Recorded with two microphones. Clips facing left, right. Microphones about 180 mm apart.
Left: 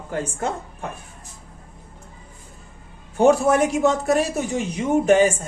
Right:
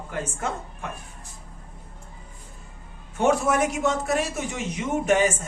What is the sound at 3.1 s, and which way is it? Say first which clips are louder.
Speech: left 5 dB; 35° left (ahead or behind).